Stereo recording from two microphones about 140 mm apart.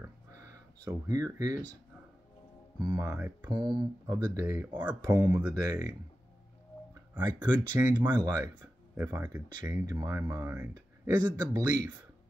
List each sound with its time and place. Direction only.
0.0 s a sound: 25° right (ahead or behind)
2.8 s a man's voice: 30° right (ahead or behind)
8.9 s speech: 15° right (ahead or behind)
9.8 s a man's voice: 30° right (ahead or behind)